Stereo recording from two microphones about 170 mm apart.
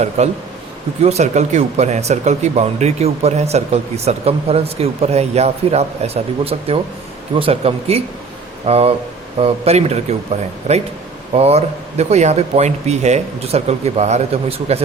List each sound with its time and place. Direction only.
1.0 s speech: 40° right (ahead or behind)